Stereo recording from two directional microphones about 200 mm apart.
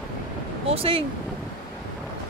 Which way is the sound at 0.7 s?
30° right (ahead or behind).